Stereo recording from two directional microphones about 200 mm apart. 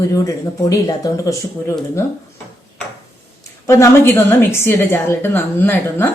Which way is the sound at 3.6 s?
15° left (ahead or behind).